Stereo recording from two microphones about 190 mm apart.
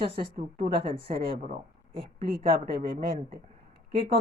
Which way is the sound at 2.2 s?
50° right (ahead or behind).